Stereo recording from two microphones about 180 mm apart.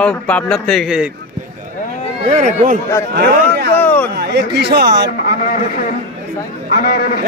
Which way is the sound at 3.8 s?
10° left (ahead or behind).